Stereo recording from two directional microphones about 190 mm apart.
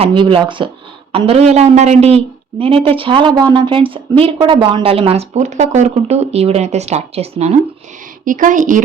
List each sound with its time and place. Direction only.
0.0 s a woman's voice: 25° right (ahead or behind); by 8.8 s 45° right (ahead or behind)